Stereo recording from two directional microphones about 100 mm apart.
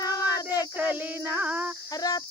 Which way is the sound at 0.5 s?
15° right (ahead or behind).